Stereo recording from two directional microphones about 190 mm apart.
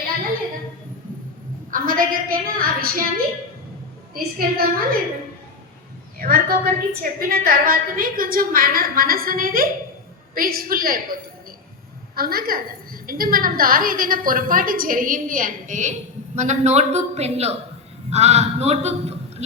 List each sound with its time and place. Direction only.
1.7 s a woman's voice: 45° right (ahead or behind)
4.1 s a woman's voice: 50° right (ahead or behind)
6.1 s a woman's voice: 50° right (ahead or behind); by 19.1 s 35° right (ahead or behind)